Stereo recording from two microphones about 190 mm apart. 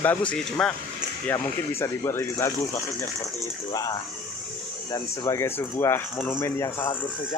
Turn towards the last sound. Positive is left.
turn(degrees=15)  # may be behind; listen again after turning